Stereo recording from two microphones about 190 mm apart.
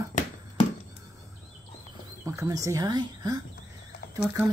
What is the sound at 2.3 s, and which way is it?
Speech, 15° right (ahead or behind).